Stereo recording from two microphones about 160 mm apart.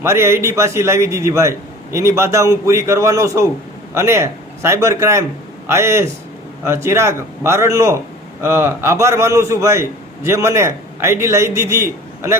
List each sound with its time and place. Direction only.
0.0 s a man's voice: 15° right (ahead or behind)